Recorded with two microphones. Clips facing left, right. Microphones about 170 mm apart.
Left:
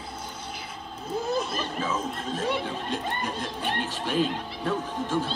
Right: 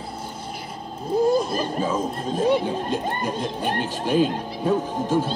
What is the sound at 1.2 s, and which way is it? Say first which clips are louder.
Speech: right 9 dB; 35° right (ahead or behind).